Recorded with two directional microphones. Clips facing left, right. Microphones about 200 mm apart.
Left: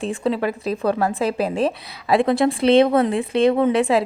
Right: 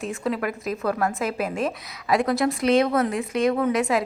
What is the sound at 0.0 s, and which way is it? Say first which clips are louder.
A woman's voice: left 5 dB; 30° left (ahead or behind).